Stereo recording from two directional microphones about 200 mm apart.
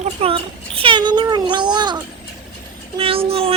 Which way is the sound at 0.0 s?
30° right (ahead or behind).